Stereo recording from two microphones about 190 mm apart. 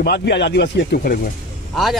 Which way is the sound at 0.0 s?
60° left (ahead or behind).